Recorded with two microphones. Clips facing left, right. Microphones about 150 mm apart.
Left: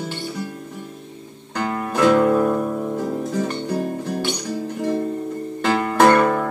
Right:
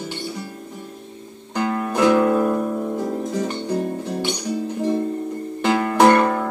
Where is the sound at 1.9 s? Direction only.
15° right (ahead or behind).